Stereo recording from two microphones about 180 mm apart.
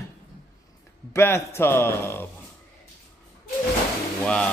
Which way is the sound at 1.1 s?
15° left (ahead or behind).